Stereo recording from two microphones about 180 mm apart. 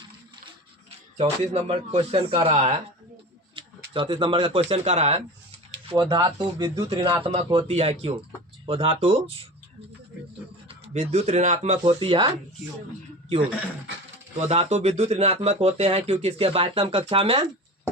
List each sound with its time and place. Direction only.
1.1 s speech: 35° right (ahead or behind)
5.9 s speech: 25° right (ahead or behind)
10.7 s speech: 35° right (ahead or behind)
14.3 s speech: 35° right (ahead or behind)